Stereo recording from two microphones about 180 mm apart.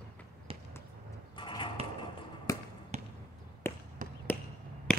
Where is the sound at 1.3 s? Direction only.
30° left (ahead or behind).